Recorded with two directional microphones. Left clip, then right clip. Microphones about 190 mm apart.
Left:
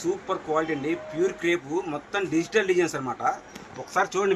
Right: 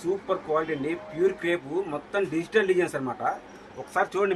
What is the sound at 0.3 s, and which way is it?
Speech, 15° right (ahead or behind).